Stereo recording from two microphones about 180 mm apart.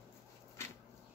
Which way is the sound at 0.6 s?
15° left (ahead or behind).